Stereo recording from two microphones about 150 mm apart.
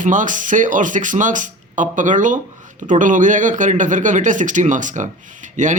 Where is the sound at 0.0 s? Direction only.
60° right (ahead or behind).